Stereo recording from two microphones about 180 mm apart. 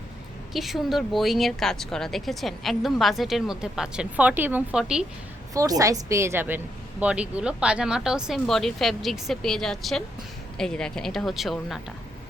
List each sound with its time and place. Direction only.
0.5 s speech: centre (ahead or behind)
5.5 s a woman's voice: 20° right (ahead or behind); by 11.8 s centre (ahead or behind)